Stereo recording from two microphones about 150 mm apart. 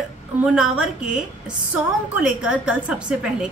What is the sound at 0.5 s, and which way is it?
Speech, 5° right (ahead or behind).